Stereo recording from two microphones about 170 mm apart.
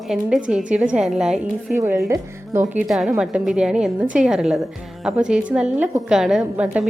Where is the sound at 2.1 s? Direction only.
15° right (ahead or behind).